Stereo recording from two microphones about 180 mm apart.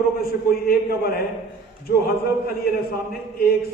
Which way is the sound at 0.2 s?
55° left (ahead or behind).